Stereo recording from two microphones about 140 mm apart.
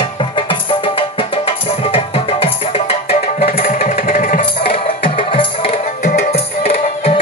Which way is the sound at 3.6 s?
80° left.